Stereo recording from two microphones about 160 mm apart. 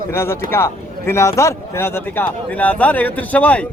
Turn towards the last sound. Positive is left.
turn(degrees=10)  # may be behind; listen again after turning